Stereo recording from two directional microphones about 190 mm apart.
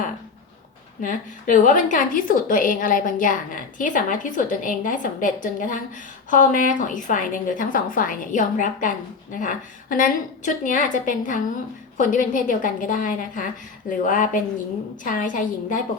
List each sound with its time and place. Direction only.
1.0 s a woman's voice: 45° left (ahead or behind)